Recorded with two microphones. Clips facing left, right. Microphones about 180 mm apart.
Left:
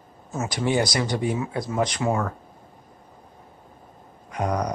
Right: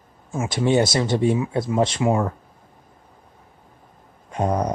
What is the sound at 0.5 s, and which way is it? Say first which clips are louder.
A man's voice: right 4 dB; 25° right (ahead or behind).